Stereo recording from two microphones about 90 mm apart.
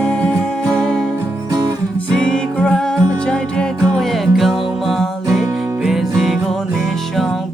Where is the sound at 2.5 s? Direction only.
10° left (ahead or behind).